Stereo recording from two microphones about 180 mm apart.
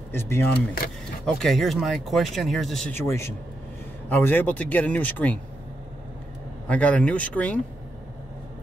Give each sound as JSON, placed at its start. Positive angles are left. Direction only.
{"t": 0.1, "sound": "speech", "side_deg": 15}
{"t": 1.2, "sound": "speech", "side_deg": 0}
{"t": 2.9, "sound": "speech", "side_deg": 15}
{"t": 6.7, "sound": "speech", "side_deg": 5}